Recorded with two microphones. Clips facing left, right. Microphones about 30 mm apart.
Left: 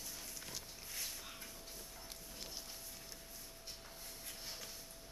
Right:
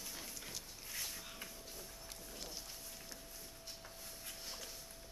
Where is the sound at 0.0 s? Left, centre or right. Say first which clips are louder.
Right 1 dB; centre.